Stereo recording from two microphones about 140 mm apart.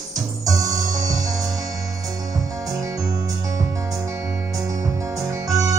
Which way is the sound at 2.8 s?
25° right (ahead or behind).